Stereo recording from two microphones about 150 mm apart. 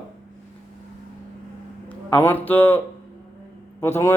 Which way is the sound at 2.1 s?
15° left (ahead or behind).